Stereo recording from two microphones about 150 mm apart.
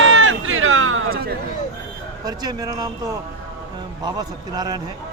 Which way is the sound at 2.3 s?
25° right (ahead or behind).